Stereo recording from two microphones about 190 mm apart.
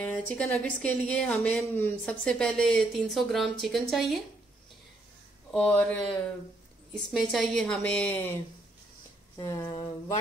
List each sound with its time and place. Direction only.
0.0 s speech: 10° left (ahead or behind)
5.5 s speech: 5° left (ahead or behind)
9.4 s speech: 15° left (ahead or behind)